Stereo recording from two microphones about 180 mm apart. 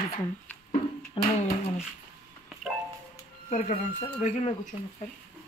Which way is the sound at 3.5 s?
40° left (ahead or behind).